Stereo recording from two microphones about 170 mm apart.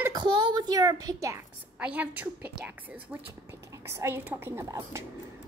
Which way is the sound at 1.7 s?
10° right (ahead or behind).